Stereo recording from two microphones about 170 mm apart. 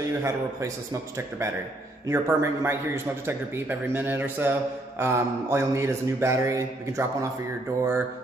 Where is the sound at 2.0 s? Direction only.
15° right (ahead or behind).